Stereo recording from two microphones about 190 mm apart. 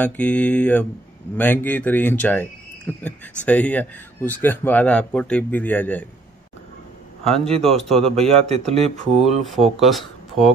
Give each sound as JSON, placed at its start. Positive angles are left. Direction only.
{"t": 0.0, "sound": "speech", "side_deg": 5}
{"t": 7.2, "sound": "speech", "side_deg": 5}
{"t": 8.3, "sound": "speech", "side_deg": -35}
{"t": 9.1, "sound": "speech", "side_deg": 0}